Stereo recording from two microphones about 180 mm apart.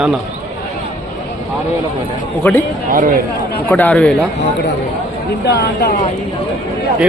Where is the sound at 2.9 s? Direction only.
45° right (ahead or behind).